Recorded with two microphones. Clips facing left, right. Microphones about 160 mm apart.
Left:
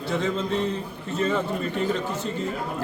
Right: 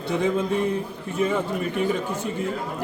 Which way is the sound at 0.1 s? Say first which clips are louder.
Right 3 dB; 15° right (ahead or behind).